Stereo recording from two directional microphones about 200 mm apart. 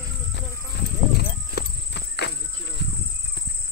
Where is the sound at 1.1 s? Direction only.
55° left (ahead or behind).